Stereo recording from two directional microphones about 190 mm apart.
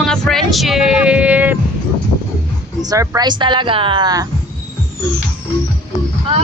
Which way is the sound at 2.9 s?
20° right (ahead or behind).